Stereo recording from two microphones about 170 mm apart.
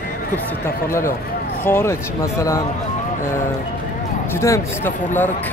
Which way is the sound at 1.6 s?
10° left (ahead or behind).